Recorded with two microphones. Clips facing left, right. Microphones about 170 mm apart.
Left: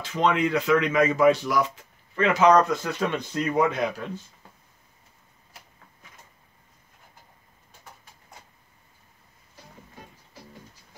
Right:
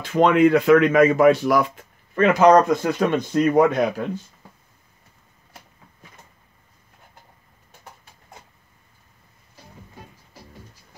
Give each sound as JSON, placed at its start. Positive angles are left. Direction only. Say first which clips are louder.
{"t": 0.0, "sound": "speech", "louder": "right 8 dB", "side_deg": -55}